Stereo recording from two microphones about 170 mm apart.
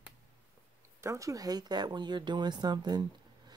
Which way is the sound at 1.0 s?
20° right (ahead or behind).